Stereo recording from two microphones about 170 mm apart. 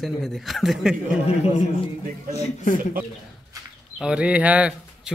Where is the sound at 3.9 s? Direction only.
5° right (ahead or behind).